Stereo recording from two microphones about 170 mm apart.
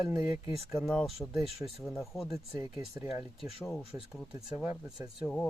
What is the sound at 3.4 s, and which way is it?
Speech, centre (ahead or behind).